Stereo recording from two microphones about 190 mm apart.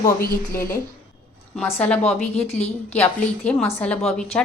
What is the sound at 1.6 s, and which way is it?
A woman's voice, 10° left (ahead or behind).